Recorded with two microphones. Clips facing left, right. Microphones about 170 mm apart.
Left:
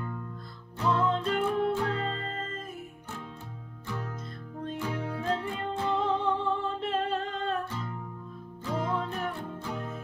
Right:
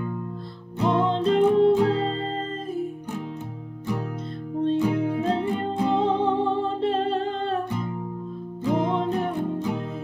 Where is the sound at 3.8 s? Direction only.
15° right (ahead or behind).